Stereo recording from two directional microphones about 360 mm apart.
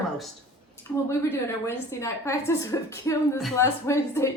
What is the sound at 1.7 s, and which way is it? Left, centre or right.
A woman's voice, centre.